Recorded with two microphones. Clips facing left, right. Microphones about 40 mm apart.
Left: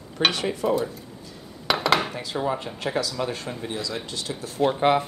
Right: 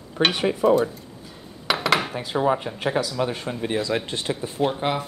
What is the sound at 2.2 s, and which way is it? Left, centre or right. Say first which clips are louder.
Speech: right 5 dB; centre.